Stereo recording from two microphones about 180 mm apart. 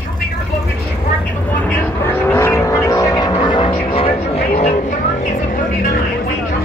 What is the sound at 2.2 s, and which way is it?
Vehicle, 15° left (ahead or behind).